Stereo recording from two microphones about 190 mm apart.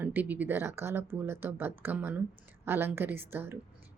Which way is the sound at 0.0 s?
10° right (ahead or behind).